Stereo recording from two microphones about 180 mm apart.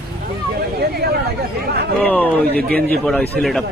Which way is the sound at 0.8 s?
60° right (ahead or behind).